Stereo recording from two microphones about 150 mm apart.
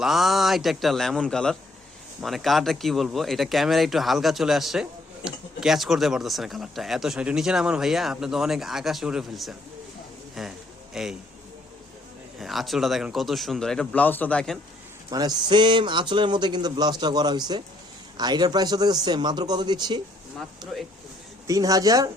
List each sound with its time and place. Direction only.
0.0 s speech: centre (ahead or behind)
12.4 s speech: centre (ahead or behind)
15.1 s a man's voice: 25° right (ahead or behind)